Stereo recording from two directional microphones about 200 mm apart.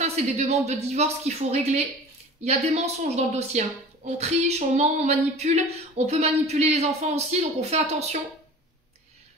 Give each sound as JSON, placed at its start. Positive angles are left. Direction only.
{"t": 0.0, "sound": "speech", "side_deg": -35}